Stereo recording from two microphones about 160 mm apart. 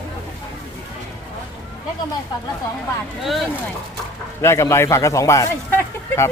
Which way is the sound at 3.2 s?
Centre (ahead or behind).